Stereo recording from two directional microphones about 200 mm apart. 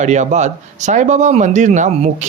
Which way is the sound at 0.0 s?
35° right (ahead or behind).